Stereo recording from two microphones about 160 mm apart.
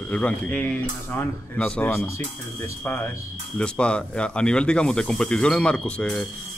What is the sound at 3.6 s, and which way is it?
Speech, 5° left (ahead or behind).